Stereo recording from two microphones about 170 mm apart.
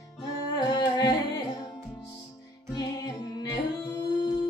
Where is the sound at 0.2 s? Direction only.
20° left (ahead or behind).